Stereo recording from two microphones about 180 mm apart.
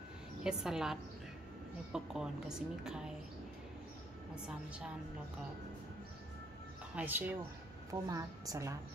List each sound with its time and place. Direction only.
0.4 s a woman's voice: 5° right (ahead or behind)
7.0 s a woman's voice: 10° right (ahead or behind)